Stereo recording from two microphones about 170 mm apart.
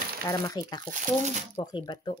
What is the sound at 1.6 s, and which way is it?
Speech, 25° left (ahead or behind).